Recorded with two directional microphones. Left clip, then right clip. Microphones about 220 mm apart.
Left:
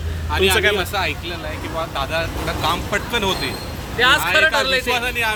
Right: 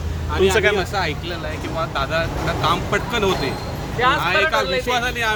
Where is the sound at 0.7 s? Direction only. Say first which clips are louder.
Left 1 dB; 15° left (ahead or behind).